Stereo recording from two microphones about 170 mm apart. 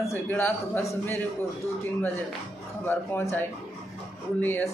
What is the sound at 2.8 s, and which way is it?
Speech, 10° left (ahead or behind).